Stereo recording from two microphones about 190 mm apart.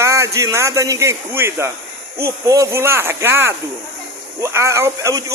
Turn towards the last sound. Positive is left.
turn(degrees=-15)  # may be behind; listen again after turning